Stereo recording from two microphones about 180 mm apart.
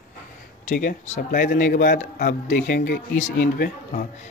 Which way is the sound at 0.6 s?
45° left (ahead or behind).